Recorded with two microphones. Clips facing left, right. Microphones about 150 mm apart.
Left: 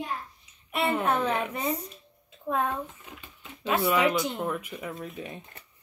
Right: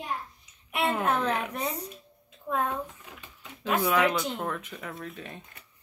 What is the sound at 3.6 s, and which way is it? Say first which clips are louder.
Speech: left 1 dB; 5° left (ahead or behind).